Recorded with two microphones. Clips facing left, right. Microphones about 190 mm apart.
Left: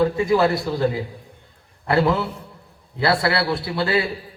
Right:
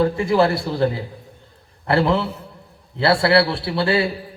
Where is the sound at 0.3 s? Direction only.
30° right (ahead or behind).